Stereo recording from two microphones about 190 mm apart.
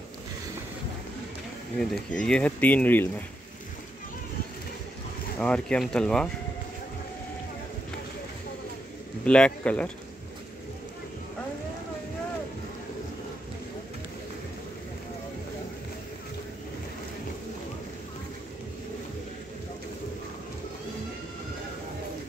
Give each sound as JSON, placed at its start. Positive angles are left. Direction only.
{"t": 1.8, "sound": "speech", "side_deg": 5}
{"t": 5.4, "sound": "speech", "side_deg": 5}
{"t": 9.2, "sound": "speech", "side_deg": 5}